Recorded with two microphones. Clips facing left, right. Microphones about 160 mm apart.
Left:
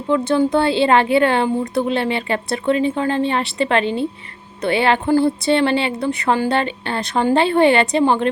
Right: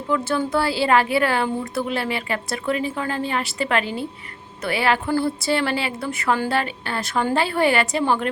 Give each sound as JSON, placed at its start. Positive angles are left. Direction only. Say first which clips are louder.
{"t": 0.1, "sound": "a woman's voice", "louder": "left 6 dB", "side_deg": 25}